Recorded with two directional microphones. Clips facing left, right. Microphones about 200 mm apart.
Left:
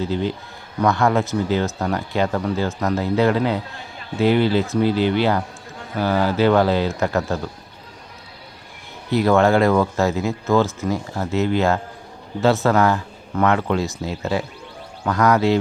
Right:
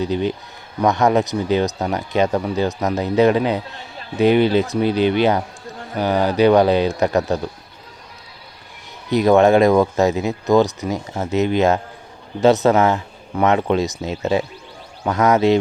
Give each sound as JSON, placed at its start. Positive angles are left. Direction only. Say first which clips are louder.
{"t": 0.0, "sound": "speech", "louder": "right 2 dB", "side_deg": -20}
{"t": 9.0, "sound": "speech", "louder": "right 3 dB", "side_deg": -20}